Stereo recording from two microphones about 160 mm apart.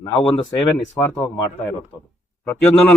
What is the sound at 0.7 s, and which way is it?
Speech, 10° left (ahead or behind).